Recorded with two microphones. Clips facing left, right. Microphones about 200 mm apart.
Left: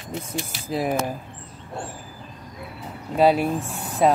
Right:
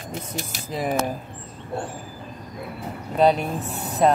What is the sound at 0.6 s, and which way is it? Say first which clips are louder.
Speech: left 2 dB; 5° left (ahead or behind).